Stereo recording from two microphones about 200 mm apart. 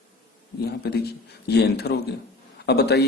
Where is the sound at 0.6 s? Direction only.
55° left (ahead or behind).